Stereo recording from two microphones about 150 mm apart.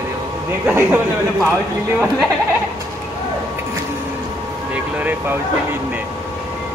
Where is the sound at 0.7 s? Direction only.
15° right (ahead or behind).